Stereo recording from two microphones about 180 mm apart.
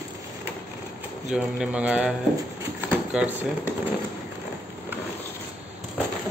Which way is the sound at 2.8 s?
10° right (ahead or behind).